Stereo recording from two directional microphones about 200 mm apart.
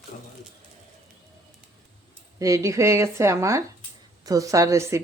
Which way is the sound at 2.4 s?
15° right (ahead or behind).